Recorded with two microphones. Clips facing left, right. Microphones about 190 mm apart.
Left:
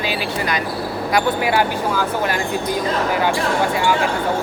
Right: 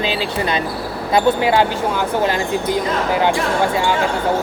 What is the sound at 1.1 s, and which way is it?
Speech, 25° right (ahead or behind).